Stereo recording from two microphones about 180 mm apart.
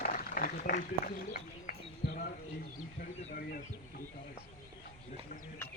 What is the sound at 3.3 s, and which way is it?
Speech, 55° left (ahead or behind).